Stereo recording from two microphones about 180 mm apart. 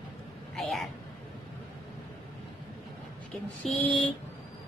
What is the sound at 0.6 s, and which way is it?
Speech, centre (ahead or behind).